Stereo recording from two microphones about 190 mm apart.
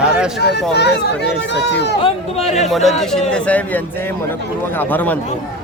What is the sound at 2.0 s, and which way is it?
Speech, 30° left (ahead or behind).